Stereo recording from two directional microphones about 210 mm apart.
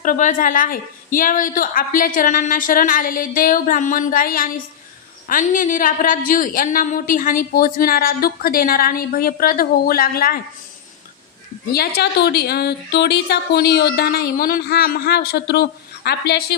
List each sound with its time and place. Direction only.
0.0 s a woman's voice: 40° left (ahead or behind)
11.7 s a woman's voice: 45° left (ahead or behind)